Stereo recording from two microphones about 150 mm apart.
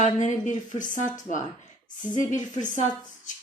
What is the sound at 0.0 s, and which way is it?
Speech, 55° left (ahead or behind).